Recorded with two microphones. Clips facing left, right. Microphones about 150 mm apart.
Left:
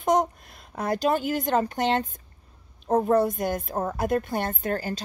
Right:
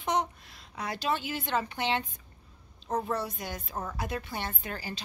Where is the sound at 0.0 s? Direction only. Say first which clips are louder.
Left 7 dB; 45° left (ahead or behind).